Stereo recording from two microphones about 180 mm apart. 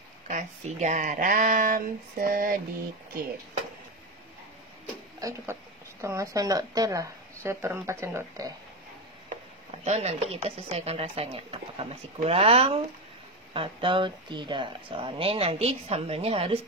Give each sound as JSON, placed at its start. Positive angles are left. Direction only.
{"t": 0.3, "sound": "speech", "side_deg": -40}
{"t": 5.2, "sound": "speech", "side_deg": -15}
{"t": 9.7, "sound": "speech", "side_deg": -35}